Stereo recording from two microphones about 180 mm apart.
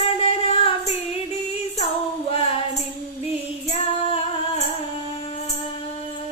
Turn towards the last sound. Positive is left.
turn(degrees=35)  # may be behind; listen again after turning